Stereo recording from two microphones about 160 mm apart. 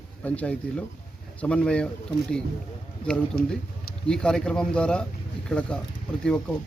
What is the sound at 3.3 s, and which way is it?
Speech, 70° left (ahead or behind).